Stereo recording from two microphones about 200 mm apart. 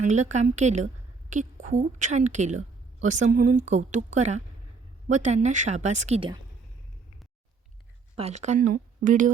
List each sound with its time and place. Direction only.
0.0 s a woman's voice: 35° right (ahead or behind)
8.1 s speech: 35° right (ahead or behind)